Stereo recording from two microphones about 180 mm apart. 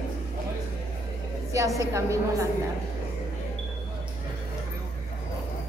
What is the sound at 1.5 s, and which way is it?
A man's voice, 20° right (ahead or behind).